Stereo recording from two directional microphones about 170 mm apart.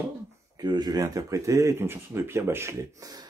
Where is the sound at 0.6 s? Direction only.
25° right (ahead or behind).